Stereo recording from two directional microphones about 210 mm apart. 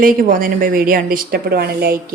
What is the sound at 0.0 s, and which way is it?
A woman's voice, 40° right (ahead or behind).